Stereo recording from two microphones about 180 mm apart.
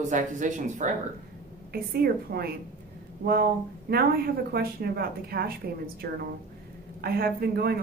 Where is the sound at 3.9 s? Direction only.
60° right (ahead or behind).